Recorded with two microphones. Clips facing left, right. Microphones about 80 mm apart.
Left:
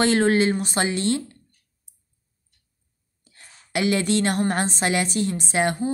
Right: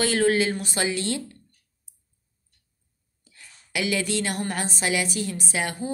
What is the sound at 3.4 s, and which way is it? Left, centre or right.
A woman's voice, left.